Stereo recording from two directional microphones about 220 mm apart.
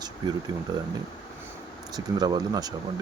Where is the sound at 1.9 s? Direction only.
20° right (ahead or behind).